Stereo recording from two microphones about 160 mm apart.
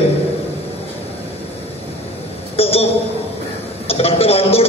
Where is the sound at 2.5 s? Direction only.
40° left (ahead or behind).